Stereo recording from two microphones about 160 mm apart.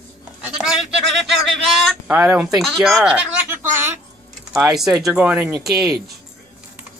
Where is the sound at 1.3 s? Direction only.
Centre (ahead or behind).